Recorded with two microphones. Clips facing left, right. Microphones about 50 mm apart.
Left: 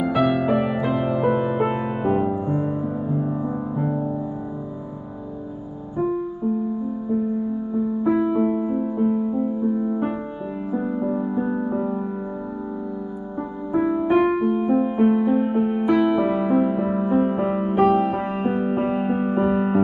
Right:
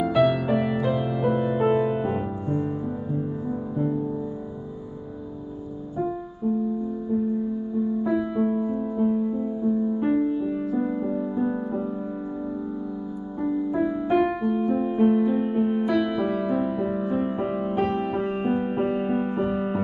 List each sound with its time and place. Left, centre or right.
0.0 s music: centre
8.0 s music: left
13.7 s music: left
14.0 s music: centre